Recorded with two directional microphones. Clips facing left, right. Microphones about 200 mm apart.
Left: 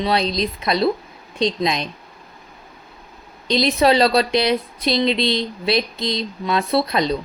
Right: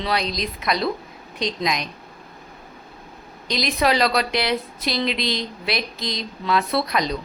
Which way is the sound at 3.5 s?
30° left (ahead or behind).